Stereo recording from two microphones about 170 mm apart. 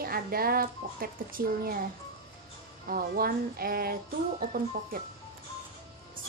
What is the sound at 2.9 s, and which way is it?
A woman's voice, 60° right (ahead or behind).